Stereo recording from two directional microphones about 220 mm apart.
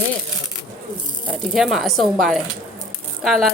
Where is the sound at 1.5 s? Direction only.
Centre (ahead or behind).